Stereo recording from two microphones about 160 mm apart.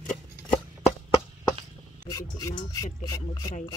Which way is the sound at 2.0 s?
25° left (ahead or behind).